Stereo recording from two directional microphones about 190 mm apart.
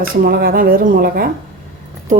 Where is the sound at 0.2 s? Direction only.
50° right (ahead or behind).